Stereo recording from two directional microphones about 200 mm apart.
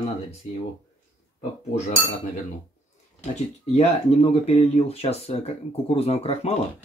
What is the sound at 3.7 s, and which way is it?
Speech, 30° left (ahead or behind).